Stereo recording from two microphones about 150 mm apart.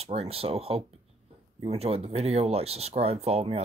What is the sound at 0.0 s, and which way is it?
Speech, 45° right (ahead or behind).